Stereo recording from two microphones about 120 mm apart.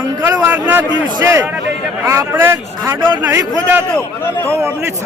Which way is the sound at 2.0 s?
20° right (ahead or behind).